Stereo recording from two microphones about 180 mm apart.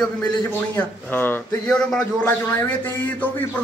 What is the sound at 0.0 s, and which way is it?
A man's voice, 5° left (ahead or behind).